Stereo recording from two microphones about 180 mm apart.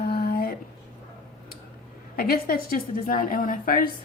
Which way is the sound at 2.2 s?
55° left (ahead or behind).